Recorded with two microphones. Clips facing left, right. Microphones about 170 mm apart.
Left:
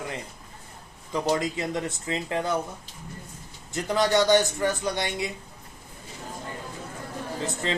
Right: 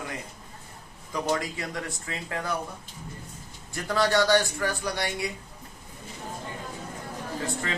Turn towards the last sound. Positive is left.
turn(degrees=20)  # may be behind; listen again after turning